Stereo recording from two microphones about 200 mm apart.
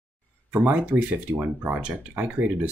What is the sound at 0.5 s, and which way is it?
Speech, 10° right (ahead or behind).